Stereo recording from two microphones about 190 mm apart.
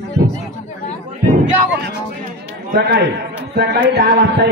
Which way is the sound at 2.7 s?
60° right (ahead or behind).